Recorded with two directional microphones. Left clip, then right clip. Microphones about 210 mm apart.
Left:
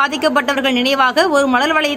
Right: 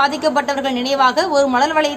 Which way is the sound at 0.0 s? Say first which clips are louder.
Left 1 dB; 15° left (ahead or behind).